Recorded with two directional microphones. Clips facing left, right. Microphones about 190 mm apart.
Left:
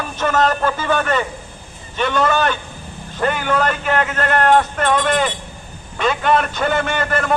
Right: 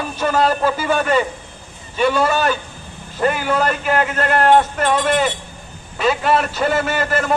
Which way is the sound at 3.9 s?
30° right (ahead or behind).